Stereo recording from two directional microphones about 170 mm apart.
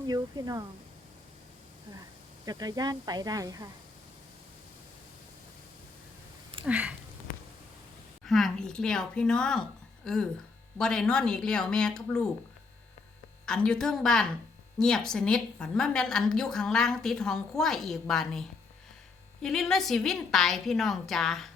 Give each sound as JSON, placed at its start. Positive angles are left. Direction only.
{"t": 0.1, "sound": "speech", "side_deg": -20}
{"t": 2.5, "sound": "speech", "side_deg": -25}
{"t": 6.7, "sound": "a sound", "side_deg": -5}
{"t": 8.2, "sound": "a woman's voice", "side_deg": 0}
{"t": 13.4, "sound": "a woman's voice", "side_deg": 5}